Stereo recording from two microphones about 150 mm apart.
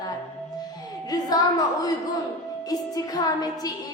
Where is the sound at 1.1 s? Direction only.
25° left (ahead or behind).